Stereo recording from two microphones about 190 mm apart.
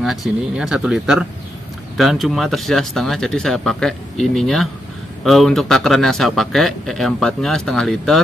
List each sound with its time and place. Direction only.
0.0 s speech: centre (ahead or behind)